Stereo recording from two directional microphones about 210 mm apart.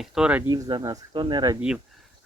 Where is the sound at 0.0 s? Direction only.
5° right (ahead or behind).